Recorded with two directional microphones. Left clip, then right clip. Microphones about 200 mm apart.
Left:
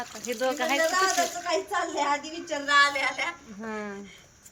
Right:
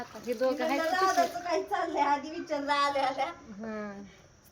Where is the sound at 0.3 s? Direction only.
Centre (ahead or behind).